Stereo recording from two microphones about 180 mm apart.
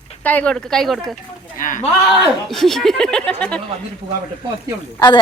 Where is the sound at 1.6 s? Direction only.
45° left (ahead or behind).